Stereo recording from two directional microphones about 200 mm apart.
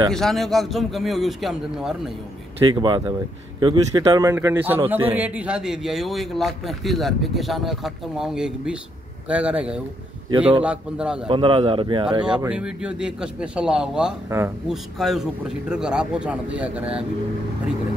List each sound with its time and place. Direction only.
0.1 s speech: centre (ahead or behind)
2.6 s speech: 20° right (ahead or behind); by 11.2 s 5° right (ahead or behind)
11.2 s speech: 25° right (ahead or behind)
12.3 s speech: 5° right (ahead or behind)